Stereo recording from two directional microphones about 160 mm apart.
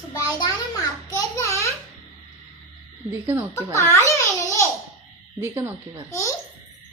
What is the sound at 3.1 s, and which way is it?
Speech, 15° right (ahead or behind).